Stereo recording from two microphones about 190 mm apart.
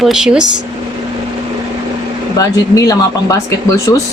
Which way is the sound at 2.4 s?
20° left (ahead or behind).